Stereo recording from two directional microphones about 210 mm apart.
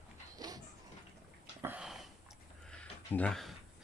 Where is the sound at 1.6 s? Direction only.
5° right (ahead or behind).